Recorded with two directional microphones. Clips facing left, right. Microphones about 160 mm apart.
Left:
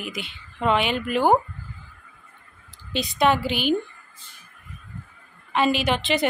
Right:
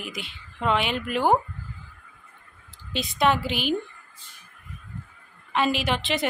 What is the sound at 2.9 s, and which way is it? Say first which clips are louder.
Speech: left 2 dB; centre (ahead or behind).